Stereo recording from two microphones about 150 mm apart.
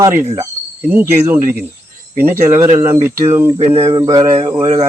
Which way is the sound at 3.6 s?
45° right (ahead or behind).